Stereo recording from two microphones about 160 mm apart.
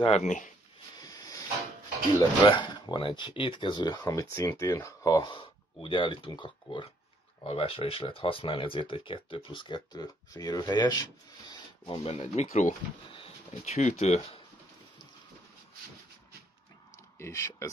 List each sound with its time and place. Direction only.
0.0 s speech: 45° left (ahead or behind)
0.9 s hiss: 20° left (ahead or behind)
2.1 s speech: 25° left (ahead or behind)
12.1 s speech: 45° left (ahead or behind)
16.9 s a sound: 20° left (ahead or behind)